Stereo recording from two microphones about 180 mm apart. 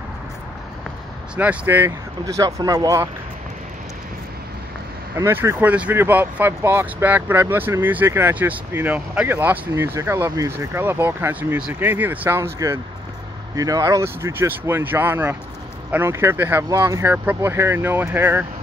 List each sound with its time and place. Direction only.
1.3 s speech: 5° right (ahead or behind)
5.1 s speech: 15° right (ahead or behind)